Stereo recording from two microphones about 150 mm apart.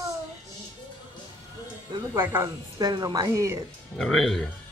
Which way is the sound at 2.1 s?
15° right (ahead or behind).